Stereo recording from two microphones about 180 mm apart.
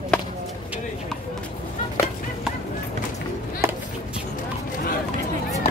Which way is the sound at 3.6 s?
15° right (ahead or behind).